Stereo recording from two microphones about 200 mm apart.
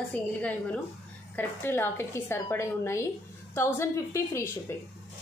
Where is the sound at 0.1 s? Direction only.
5° left (ahead or behind).